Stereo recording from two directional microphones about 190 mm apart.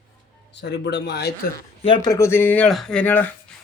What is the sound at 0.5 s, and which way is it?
Speech, 65° left (ahead or behind).